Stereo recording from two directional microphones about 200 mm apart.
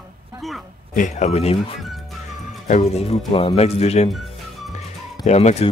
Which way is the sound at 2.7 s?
30° left (ahead or behind).